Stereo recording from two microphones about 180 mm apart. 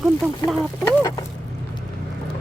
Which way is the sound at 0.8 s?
15° left (ahead or behind).